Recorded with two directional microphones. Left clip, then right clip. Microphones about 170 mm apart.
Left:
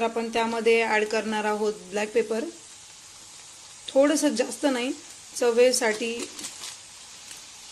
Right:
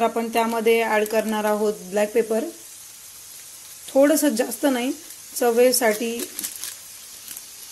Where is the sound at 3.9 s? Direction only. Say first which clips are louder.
Right 4 dB; 30° right (ahead or behind).